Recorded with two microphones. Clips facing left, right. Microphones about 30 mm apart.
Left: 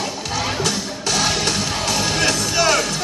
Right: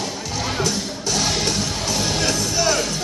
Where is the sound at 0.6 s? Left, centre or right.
Left.